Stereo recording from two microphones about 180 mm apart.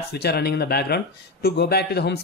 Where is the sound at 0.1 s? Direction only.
60° left (ahead or behind).